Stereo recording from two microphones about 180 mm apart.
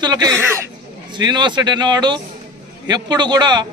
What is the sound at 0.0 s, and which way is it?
A man's voice, 20° right (ahead or behind).